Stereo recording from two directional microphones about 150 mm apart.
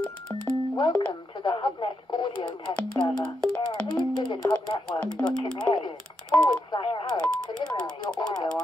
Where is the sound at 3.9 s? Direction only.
25° left (ahead or behind).